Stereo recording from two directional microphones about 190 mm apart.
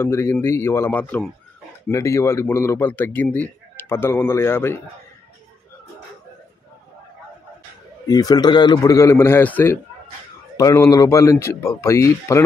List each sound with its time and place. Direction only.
0.0 s speech: 15° left (ahead or behind)
8.1 s speech: 20° left (ahead or behind)